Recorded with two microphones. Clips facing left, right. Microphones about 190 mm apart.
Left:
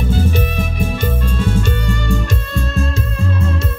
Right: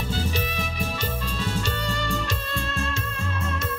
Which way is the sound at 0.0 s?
50° left (ahead or behind).